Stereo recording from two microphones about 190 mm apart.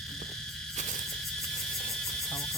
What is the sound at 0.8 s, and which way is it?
Cricket, 40° right (ahead or behind).